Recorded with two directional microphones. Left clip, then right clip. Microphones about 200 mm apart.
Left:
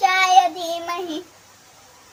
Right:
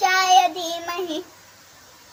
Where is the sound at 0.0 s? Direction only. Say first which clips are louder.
Left 1 dB; 15° left (ahead or behind).